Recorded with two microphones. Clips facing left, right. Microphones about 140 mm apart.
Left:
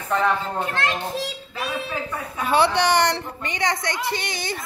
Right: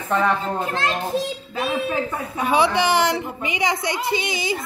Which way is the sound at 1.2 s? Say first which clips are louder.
Right 4 dB; 25° right (ahead or behind).